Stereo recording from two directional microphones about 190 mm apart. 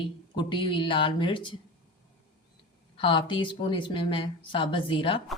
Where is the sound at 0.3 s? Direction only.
25° left (ahead or behind).